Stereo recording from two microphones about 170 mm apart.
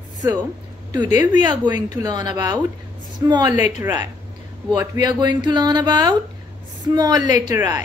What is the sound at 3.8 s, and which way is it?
A woman's voice, 15° right (ahead or behind).